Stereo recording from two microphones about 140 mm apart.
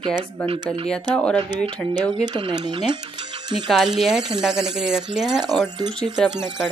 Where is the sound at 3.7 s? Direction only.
5° right (ahead or behind).